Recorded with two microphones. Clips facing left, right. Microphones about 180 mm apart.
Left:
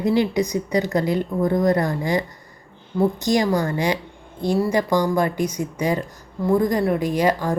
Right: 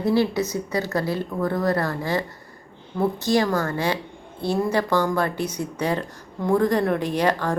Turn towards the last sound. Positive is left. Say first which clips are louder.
# left 2 dB
turn(degrees=10)  # may be behind; listen again after turning